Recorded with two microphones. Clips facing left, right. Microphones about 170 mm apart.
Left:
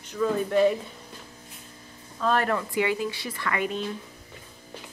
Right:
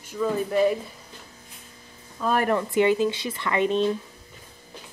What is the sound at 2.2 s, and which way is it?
Speech, 10° right (ahead or behind).